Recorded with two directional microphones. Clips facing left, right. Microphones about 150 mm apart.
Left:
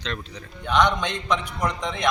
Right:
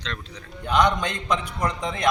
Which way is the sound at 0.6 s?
10° right (ahead or behind).